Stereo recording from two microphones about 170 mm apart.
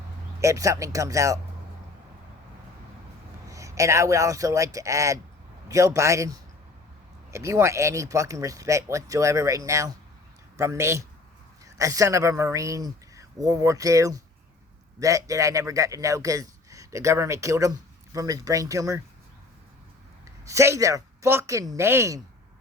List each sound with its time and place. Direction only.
0.4 s speech: 20° right (ahead or behind)
3.5 s speech: 20° right (ahead or behind)
20.4 s speech: 20° right (ahead or behind)